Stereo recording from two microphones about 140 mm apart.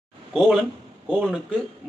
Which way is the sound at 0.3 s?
5° right (ahead or behind).